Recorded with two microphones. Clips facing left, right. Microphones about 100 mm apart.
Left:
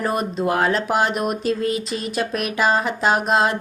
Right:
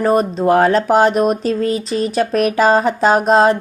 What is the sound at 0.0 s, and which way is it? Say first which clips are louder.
A woman's voice: right 7 dB; 35° right (ahead or behind).